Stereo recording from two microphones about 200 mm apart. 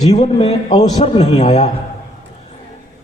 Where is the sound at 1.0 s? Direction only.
30° left (ahead or behind).